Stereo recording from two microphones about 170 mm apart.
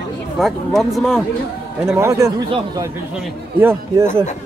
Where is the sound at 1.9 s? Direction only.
15° right (ahead or behind).